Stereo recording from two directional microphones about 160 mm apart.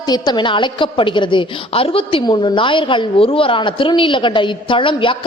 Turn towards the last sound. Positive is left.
turn(degrees=30)  # may be behind; listen again after turning